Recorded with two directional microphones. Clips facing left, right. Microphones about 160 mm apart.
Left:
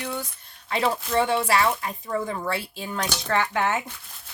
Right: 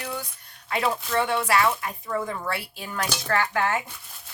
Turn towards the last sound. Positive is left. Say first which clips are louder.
# left 1 dB
turn(degrees=20)  # may be behind; listen again after turning